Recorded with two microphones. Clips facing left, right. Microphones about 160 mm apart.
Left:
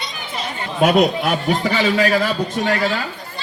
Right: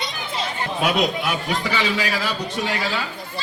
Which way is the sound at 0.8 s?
50° left (ahead or behind).